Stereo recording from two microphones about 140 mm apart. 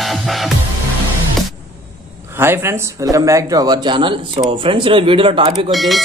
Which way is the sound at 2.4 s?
15° right (ahead or behind).